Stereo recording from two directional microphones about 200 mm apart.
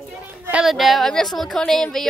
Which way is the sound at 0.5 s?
5° right (ahead or behind).